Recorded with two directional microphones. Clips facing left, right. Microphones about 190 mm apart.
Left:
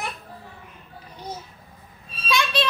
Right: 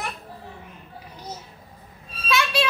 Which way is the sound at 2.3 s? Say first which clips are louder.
Right 1 dB; 5° right (ahead or behind).